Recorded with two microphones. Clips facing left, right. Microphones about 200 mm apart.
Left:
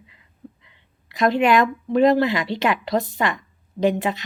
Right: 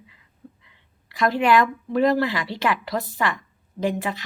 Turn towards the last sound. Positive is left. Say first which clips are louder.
# left 5 dB
turn(degrees=20)  # may be behind; listen again after turning